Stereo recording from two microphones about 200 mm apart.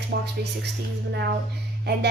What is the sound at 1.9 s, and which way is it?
Speech, 55° right (ahead or behind).